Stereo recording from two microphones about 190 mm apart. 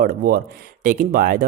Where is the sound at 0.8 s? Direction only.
45° right (ahead or behind).